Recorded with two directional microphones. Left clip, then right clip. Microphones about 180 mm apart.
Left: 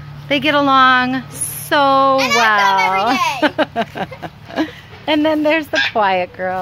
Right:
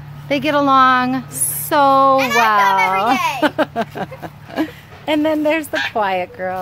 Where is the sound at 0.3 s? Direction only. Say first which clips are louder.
Left 1 dB; 10° right (ahead or behind).